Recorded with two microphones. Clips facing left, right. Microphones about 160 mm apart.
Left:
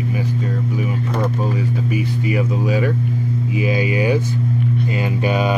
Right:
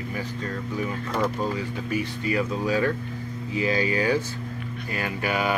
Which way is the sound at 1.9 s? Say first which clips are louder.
Left 2 dB; 10° left (ahead or behind).